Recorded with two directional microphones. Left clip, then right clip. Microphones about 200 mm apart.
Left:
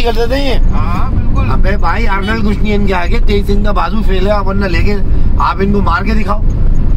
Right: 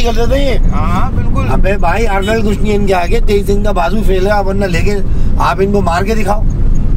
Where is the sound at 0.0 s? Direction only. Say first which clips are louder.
Even; 55° left (ahead or behind).